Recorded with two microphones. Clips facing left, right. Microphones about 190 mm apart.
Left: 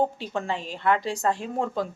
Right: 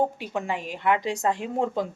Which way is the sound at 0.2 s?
15° right (ahead or behind).